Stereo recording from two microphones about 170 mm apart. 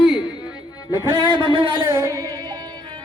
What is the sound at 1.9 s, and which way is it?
Music, 20° right (ahead or behind).